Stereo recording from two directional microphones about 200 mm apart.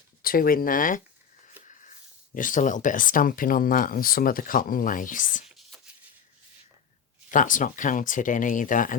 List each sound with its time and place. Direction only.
0.2 s speech: 45° left (ahead or behind)
2.3 s speech: 40° left (ahead or behind)
7.3 s speech: 40° left (ahead or behind)